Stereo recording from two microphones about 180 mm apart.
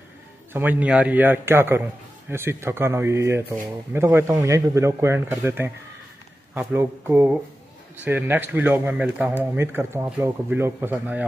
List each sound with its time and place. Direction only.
0.5 s speech: 10° right (ahead or behind)